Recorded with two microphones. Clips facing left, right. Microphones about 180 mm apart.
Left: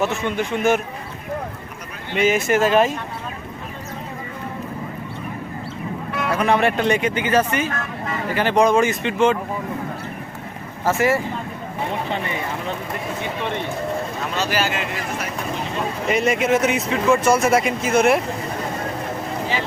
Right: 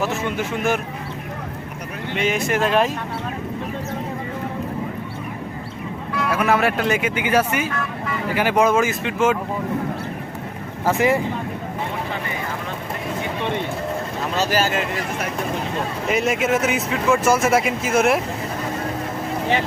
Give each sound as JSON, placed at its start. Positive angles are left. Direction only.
{"t": 0.0, "sound": "speech", "side_deg": -5}
{"t": 2.1, "sound": "speech", "side_deg": 5}
{"t": 6.3, "sound": "speech", "side_deg": -5}
{"t": 10.8, "sound": "speech", "side_deg": -15}
{"t": 14.3, "sound": "speech", "side_deg": -40}
{"t": 16.0, "sound": "speech", "side_deg": 0}